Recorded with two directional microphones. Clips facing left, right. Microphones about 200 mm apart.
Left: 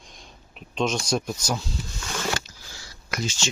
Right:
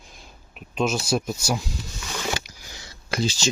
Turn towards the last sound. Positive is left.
turn(degrees=-30)  # may be behind; listen again after turning